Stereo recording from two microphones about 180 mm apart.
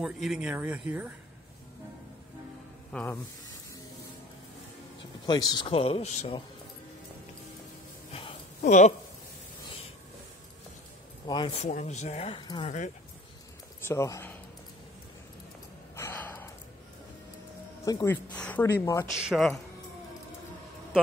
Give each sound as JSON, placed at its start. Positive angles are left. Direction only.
{"t": 0.0, "sound": "speech", "side_deg": 0}
{"t": 2.9, "sound": "speech", "side_deg": 10}
{"t": 5.2, "sound": "a man's voice", "side_deg": 25}
{"t": 8.1, "sound": "a sound", "side_deg": 30}
{"t": 11.2, "sound": "speech", "side_deg": 25}
{"t": 11.6, "sound": "a man's voice", "side_deg": 40}
{"t": 12.4, "sound": "speech", "side_deg": 25}
{"t": 13.8, "sound": "speech", "side_deg": 15}
{"t": 16.0, "sound": "gasp", "side_deg": 15}
{"t": 17.8, "sound": "speech", "side_deg": 15}
{"t": 19.1, "sound": "speech", "side_deg": -5}